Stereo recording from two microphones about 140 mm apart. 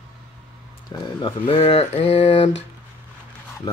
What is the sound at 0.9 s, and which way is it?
Speech, 35° left (ahead or behind).